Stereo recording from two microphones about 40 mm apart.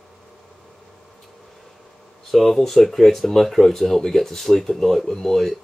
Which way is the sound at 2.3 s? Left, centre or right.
Centre.